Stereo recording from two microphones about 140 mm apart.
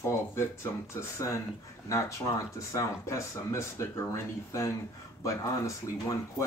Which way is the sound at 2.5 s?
20° left (ahead or behind).